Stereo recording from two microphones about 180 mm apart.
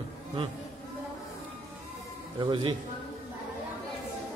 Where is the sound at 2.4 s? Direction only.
30° right (ahead or behind).